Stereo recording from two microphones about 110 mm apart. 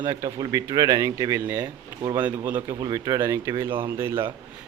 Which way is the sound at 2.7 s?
30° right (ahead or behind).